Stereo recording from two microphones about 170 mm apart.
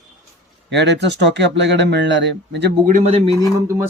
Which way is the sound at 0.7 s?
90° right.